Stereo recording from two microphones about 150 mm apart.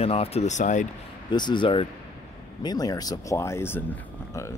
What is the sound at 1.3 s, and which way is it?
Speech, 30° left (ahead or behind).